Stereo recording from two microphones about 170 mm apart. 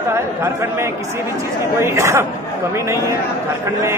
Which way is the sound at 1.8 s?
15° right (ahead or behind).